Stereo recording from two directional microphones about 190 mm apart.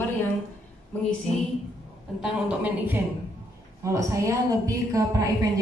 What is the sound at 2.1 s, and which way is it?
A woman's voice, 5° right (ahead or behind).